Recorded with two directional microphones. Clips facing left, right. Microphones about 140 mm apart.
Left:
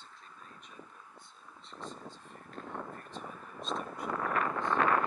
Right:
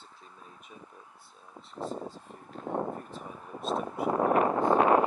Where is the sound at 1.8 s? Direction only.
75° right (ahead or behind).